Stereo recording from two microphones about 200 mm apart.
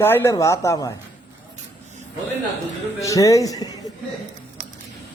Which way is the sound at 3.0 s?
15° left (ahead or behind).